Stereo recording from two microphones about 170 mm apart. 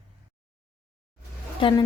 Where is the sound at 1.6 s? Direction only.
25° left (ahead or behind).